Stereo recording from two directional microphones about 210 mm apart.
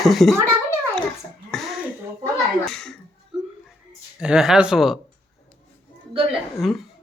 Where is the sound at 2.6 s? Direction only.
5° left (ahead or behind).